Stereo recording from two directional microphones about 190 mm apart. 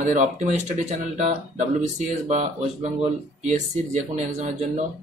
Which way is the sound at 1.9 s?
40° right (ahead or behind).